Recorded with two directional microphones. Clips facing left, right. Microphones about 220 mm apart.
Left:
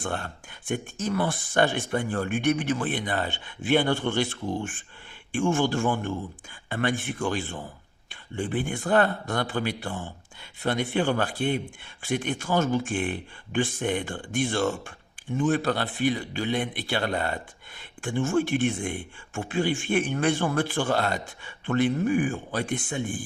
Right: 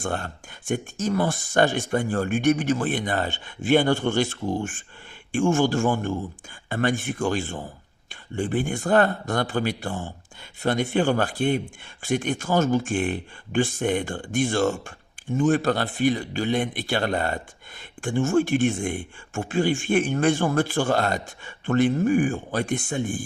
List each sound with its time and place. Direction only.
0.0 s speech: 45° right (ahead or behind)